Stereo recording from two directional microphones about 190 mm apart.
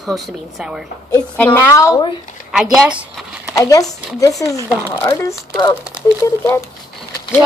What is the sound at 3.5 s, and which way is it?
A woman's voice, 15° left (ahead or behind).